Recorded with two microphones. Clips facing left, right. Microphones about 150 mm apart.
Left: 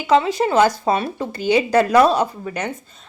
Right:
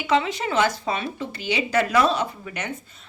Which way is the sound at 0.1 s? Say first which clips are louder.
Left 6 dB; 35° left (ahead or behind).